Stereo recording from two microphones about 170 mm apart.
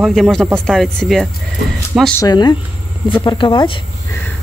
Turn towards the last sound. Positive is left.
turn(degrees=30)  # may be behind; listen again after turning